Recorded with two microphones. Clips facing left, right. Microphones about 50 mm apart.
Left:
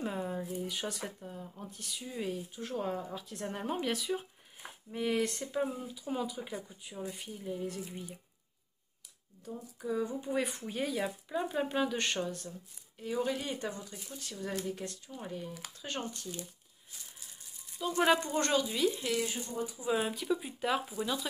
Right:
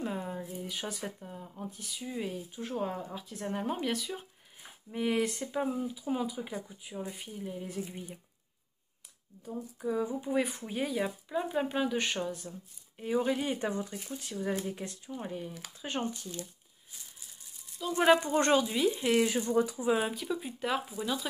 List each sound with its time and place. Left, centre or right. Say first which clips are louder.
0.0 s speech: even; centre
9.4 s speech: right 4 dB; centre
12.9 s speech: right 4 dB; right
17.9 s speech: right 4 dB; centre
18.7 s speech: right 2 dB; centre
19.2 s speech: right 9 dB; right
20.0 s speech: even; centre